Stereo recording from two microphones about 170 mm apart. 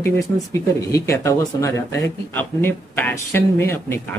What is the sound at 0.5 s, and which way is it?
Speech, 20° left (ahead or behind).